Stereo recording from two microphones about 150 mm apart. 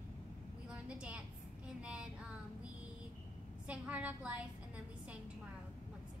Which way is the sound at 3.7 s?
10° right (ahead or behind).